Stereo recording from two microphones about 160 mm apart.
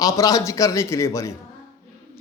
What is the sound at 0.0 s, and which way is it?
Speech, 20° left (ahead or behind).